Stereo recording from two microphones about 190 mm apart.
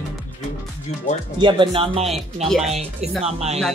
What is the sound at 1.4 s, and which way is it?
Speech, 25° right (ahead or behind).